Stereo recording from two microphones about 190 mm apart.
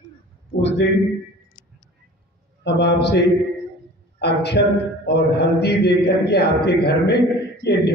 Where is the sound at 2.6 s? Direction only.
65° left (ahead or behind).